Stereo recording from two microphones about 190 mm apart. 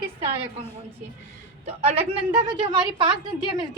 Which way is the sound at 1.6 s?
30° right (ahead or behind).